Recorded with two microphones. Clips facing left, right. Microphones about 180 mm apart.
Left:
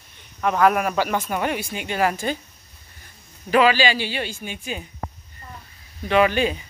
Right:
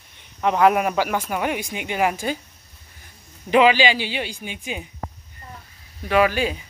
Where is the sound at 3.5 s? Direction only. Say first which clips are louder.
Right 2 dB; 20° right (ahead or behind).